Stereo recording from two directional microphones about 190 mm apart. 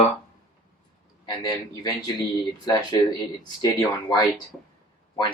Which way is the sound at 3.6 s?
20° left (ahead or behind).